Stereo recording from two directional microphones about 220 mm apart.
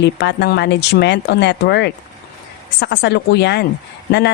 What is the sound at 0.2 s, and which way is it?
Speech, 50° left (ahead or behind).